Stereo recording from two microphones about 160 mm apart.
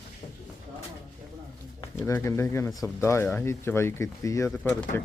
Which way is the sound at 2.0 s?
20° left (ahead or behind).